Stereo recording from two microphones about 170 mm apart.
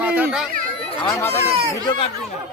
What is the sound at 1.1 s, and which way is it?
Speech, 15° left (ahead or behind).